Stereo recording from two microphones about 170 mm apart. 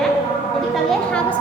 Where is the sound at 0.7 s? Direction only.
Centre (ahead or behind).